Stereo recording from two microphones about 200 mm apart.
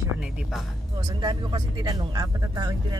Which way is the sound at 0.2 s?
5° right (ahead or behind).